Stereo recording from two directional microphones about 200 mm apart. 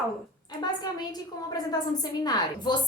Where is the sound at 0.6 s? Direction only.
20° left (ahead or behind).